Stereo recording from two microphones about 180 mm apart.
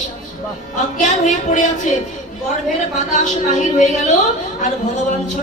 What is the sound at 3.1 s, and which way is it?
Music, 40° left (ahead or behind).